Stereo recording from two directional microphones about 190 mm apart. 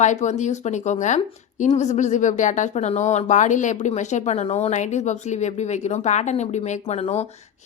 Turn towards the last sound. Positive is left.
turn(degrees=35)  # may be behind; listen again after turning